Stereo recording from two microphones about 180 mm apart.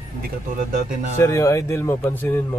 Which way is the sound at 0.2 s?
50° right (ahead or behind).